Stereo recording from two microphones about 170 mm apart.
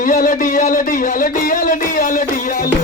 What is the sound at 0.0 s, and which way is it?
Speech, 55° left (ahead or behind).